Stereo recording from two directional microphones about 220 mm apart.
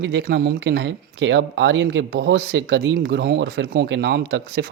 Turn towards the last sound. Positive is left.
turn(degrees=-45)  # may be behind; listen again after turning